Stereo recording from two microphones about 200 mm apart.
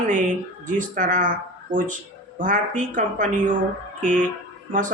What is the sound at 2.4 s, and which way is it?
Speech, 40° right (ahead or behind).